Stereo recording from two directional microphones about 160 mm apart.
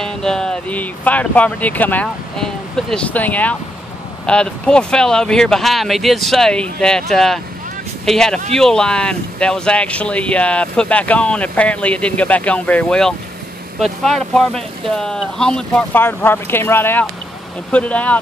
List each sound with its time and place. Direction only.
0.0 s speech: 5° left (ahead or behind)